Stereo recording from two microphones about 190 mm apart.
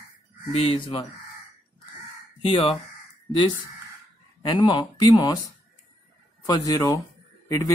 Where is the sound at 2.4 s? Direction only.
25° left (ahead or behind).